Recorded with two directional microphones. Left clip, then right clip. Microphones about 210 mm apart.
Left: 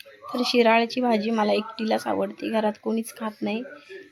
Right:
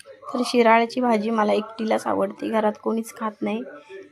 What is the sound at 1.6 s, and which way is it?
Speech, 35° left (ahead or behind).